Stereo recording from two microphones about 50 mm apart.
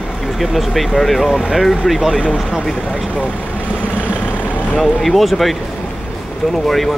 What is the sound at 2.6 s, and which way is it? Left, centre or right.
Speech, centre.